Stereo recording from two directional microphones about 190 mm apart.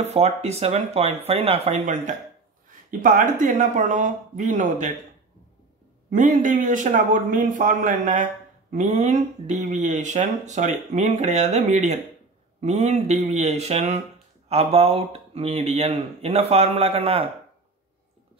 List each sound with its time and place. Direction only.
0.0 s speech: 35° right (ahead or behind)
6.0 s a man's voice: 40° right (ahead or behind)